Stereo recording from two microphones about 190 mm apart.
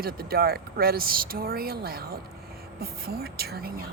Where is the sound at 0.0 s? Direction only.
55° right (ahead or behind).